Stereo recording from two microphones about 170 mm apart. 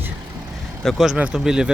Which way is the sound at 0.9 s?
Centre (ahead or behind).